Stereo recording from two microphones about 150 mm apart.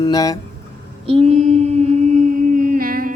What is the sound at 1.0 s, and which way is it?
Mantra, 40° right (ahead or behind).